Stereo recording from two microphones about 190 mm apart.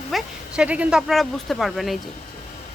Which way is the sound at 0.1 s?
5° right (ahead or behind).